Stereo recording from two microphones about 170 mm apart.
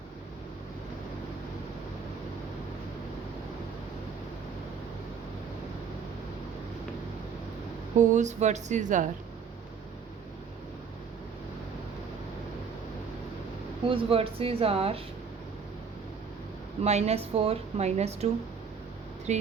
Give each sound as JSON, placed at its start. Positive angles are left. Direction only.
{"t": 7.9, "sound": "speech", "side_deg": -45}
{"t": 13.8, "sound": "a woman's voice", "side_deg": -30}
{"t": 16.8, "sound": "a woman's voice", "side_deg": -40}
{"t": 19.3, "sound": "a woman's voice", "side_deg": -40}